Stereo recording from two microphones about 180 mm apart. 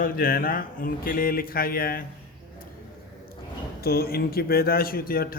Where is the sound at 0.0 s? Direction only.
50° left (ahead or behind).